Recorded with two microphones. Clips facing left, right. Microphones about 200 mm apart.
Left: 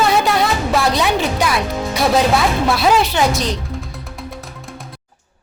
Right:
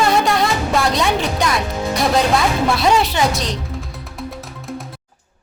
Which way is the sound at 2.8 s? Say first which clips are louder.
Left 2 dB; centre (ahead or behind).